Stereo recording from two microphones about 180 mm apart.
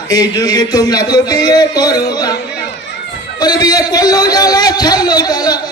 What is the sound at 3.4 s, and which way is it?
Speech, 20° left (ahead or behind).